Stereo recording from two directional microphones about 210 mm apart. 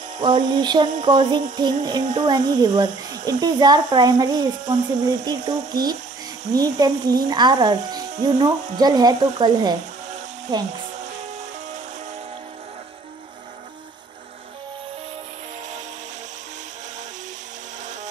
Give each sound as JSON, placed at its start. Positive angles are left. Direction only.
{"t": 0.2, "sound": "speech", "side_deg": -20}